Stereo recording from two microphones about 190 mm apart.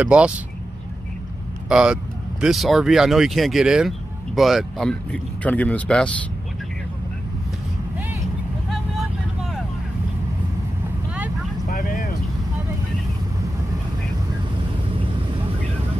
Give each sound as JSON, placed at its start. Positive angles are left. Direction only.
{"t": 0.0, "sound": "speech", "side_deg": -5}
{"t": 1.7, "sound": "speech", "side_deg": -5}
{"t": 11.7, "sound": "vehicle", "side_deg": 50}